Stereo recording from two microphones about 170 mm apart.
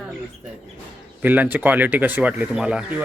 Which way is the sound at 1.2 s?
10° right (ahead or behind).